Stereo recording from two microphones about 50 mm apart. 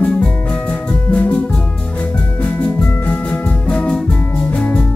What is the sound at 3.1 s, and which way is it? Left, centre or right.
Music, left.